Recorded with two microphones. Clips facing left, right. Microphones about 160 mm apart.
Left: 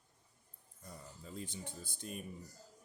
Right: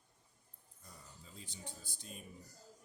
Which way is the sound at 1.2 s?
55° left (ahead or behind).